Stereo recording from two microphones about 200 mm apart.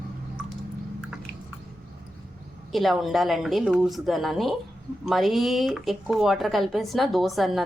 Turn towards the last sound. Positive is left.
turn(degrees=0)  # may be behind; listen again after turning